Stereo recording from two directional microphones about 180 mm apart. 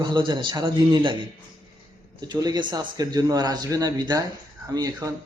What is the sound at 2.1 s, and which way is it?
A man's voice, 20° right (ahead or behind).